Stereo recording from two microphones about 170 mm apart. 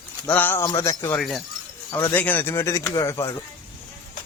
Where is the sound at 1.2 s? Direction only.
Centre (ahead or behind).